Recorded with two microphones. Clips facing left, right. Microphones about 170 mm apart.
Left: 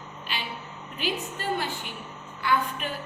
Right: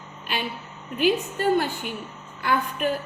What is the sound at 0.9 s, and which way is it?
A woman's voice, 50° right (ahead or behind).